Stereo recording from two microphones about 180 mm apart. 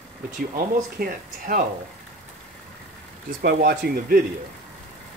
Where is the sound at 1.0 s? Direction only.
55° right (ahead or behind).